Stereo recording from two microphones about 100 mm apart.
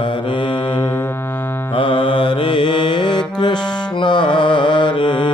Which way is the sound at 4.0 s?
50° left (ahead or behind).